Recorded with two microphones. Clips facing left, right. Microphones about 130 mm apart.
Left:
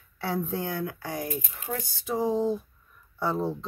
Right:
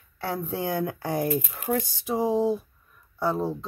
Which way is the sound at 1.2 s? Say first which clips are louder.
Right 7 dB; 60° right (ahead or behind).